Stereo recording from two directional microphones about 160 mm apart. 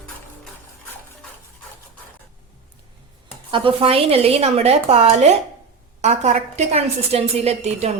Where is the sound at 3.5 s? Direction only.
35° right (ahead or behind).